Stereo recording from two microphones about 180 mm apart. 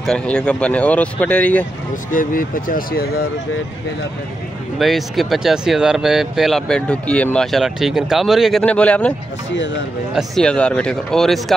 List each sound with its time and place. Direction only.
0.0 s speech: 5° left (ahead or behind)
2.0 s speech: 50° left (ahead or behind)
4.7 s speech: centre (ahead or behind)
10.1 s speech: 5° left (ahead or behind)